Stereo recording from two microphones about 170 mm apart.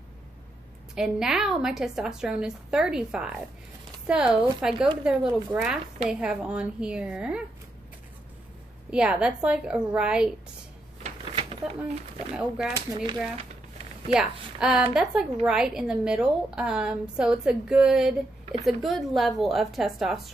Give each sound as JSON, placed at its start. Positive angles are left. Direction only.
{"t": 0.9, "sound": "a woman's voice", "side_deg": -5}
{"t": 8.9, "sound": "a woman's voice", "side_deg": -5}
{"t": 11.0, "sound": "a sound", "side_deg": -35}
{"t": 12.3, "sound": "a woman's voice", "side_deg": 0}
{"t": 12.7, "sound": "speech", "side_deg": -25}
{"t": 14.0, "sound": "a woman's voice", "side_deg": 0}
{"t": 18.4, "sound": "a sound", "side_deg": -40}
{"t": 18.7, "sound": "a woman's voice", "side_deg": 0}